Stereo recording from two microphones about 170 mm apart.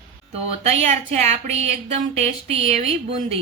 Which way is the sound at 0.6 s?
40° right (ahead or behind).